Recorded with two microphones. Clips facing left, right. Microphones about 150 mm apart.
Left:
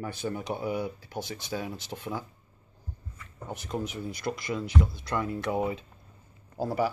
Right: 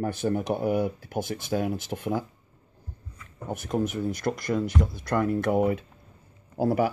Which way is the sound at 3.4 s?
50° right (ahead or behind).